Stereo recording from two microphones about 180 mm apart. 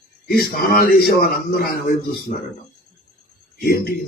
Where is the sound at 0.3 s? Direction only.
55° left (ahead or behind).